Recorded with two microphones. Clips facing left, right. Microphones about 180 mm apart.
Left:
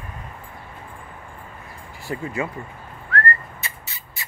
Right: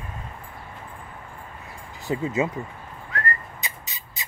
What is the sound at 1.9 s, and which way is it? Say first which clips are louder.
Speech: right 3 dB; 20° right (ahead or behind).